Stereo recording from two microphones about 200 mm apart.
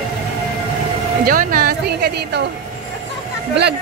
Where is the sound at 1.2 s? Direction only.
45° right (ahead or behind).